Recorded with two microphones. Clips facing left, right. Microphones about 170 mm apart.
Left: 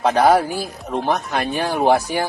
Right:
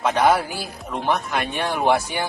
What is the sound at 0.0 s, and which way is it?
Speech, 35° left (ahead or behind).